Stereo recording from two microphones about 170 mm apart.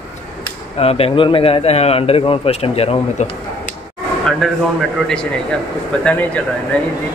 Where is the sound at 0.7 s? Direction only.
35° left (ahead or behind).